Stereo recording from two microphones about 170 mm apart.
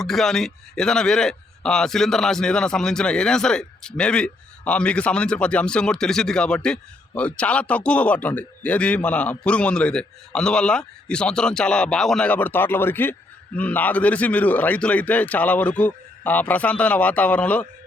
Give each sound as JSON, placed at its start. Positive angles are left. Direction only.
{"t": 0.0, "sound": "a man's voice", "side_deg": 0}